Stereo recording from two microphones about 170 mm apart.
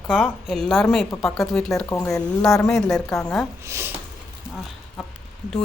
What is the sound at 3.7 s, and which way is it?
Speech, 15° right (ahead or behind).